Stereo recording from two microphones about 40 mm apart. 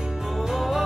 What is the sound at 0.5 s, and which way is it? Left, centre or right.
Music, centre.